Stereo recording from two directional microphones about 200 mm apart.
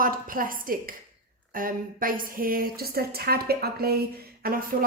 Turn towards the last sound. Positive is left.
turn(degrees=-45)  # may be behind; listen again after turning